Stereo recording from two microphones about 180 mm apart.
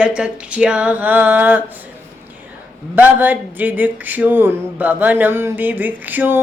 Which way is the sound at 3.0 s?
10° right (ahead or behind).